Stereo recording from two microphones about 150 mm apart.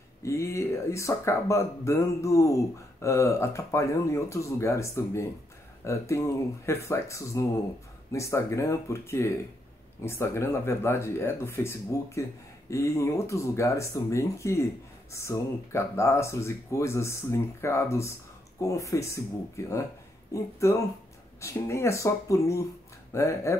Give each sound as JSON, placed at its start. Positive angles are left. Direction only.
{"t": 0.2, "sound": "speech", "side_deg": 20}